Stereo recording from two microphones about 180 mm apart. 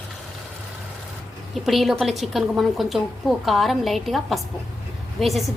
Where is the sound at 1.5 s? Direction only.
Centre (ahead or behind).